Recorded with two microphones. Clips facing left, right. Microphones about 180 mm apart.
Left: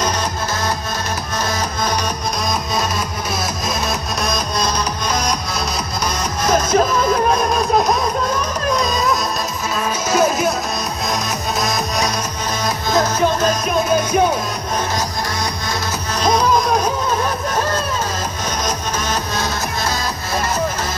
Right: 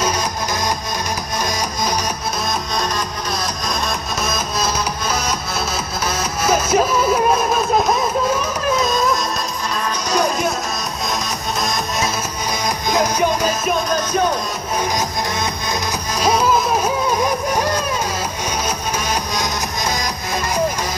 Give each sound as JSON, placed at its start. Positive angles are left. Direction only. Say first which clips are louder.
{"t": 4.2, "sound": "music", "louder": "left 1 dB", "side_deg": -5}
{"t": 6.4, "sound": "music", "louder": "left 1 dB", "side_deg": -10}
{"t": 8.7, "sound": "music", "louder": "right 1 dB", "side_deg": 0}
{"t": 12.9, "sound": "music", "louder": "left 1 dB", "side_deg": -10}
{"t": 16.2, "sound": "music", "louder": "left 1 dB", "side_deg": -10}
{"t": 19.3, "sound": "music", "louder": "left 1 dB", "side_deg": -15}